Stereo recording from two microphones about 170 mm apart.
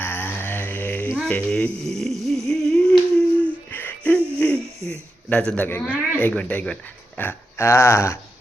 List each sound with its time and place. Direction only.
0.0 s mantra: 10° left (ahead or behind)
1.8 s a sound: centre (ahead or behind)
4.9 s speech: 5° left (ahead or behind)